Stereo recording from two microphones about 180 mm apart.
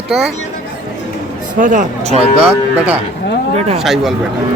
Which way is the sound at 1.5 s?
45° right (ahead or behind).